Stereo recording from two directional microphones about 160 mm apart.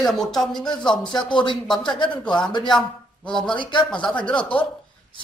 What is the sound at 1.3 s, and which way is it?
Speech, 30° left (ahead or behind).